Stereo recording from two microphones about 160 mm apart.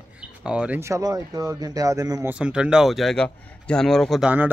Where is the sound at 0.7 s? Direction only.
20° right (ahead or behind).